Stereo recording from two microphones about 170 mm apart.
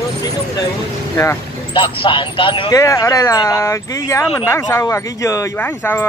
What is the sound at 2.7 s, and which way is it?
Speech, 20° left (ahead or behind).